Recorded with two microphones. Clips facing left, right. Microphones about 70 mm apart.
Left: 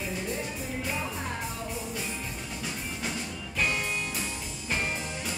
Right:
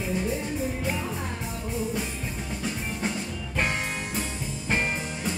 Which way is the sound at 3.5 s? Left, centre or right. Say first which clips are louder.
Right 1 dB; right.